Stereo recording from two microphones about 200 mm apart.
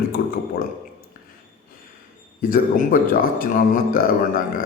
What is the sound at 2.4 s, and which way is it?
A man's voice, 45° left (ahead or behind).